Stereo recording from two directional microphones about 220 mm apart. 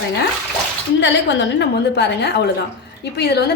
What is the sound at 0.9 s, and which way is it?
A woman's voice, 55° left (ahead or behind).